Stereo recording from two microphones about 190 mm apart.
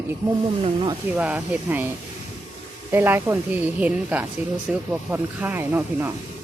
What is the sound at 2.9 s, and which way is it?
Speech, 10° right (ahead or behind).